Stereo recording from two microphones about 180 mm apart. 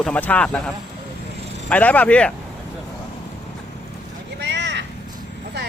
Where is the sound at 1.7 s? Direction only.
10° left (ahead or behind).